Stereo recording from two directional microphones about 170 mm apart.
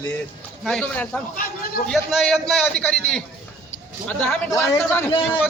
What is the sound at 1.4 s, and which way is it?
Speech, 60° left (ahead or behind).